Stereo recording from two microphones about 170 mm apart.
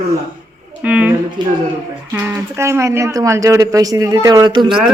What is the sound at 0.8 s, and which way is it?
Speech, 10° right (ahead or behind).